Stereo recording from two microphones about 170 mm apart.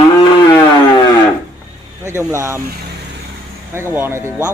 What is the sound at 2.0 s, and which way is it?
Speech, 15° right (ahead or behind).